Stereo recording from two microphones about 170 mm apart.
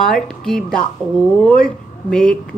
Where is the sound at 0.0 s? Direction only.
5° left (ahead or behind).